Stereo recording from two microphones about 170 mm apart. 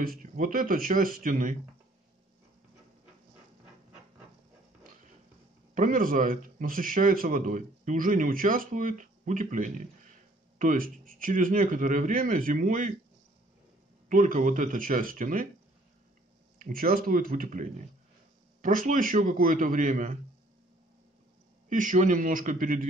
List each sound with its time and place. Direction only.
0.0 s speech: 55° right (ahead or behind)
5.8 s a man's voice: 55° right (ahead or behind)
14.0 s a man's voice: 50° right (ahead or behind)
16.5 s a man's voice: 55° right (ahead or behind)
21.6 s a man's voice: 50° right (ahead or behind)